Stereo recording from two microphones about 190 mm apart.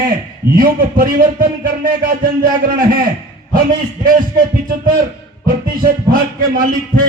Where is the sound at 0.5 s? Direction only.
50° right (ahead or behind).